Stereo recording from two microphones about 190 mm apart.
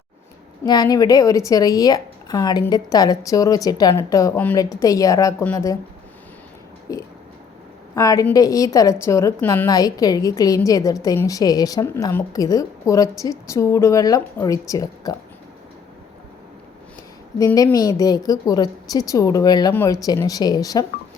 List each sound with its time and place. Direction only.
0.6 s a woman's voice: 20° left (ahead or behind)
6.9 s a woman's voice: 15° left (ahead or behind)
17.3 s speech: 20° left (ahead or behind)